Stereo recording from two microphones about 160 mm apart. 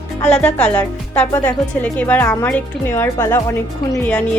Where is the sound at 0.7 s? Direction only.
10° left (ahead or behind).